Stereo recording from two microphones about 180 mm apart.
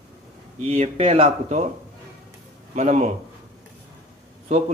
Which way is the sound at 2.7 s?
40° right (ahead or behind).